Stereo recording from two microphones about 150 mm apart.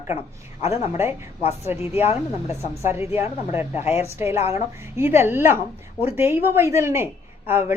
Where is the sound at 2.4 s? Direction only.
45° left (ahead or behind).